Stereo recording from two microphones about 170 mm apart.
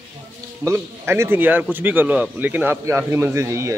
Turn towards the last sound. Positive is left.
turn(degrees=-15)  # may be behind; listen again after turning